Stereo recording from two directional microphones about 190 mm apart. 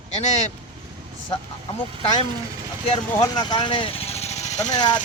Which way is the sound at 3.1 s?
20° left (ahead or behind).